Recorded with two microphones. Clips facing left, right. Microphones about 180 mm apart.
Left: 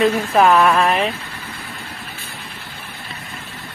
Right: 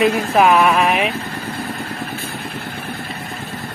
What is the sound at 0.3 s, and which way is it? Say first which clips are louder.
Speech: even; 10° right (ahead or behind).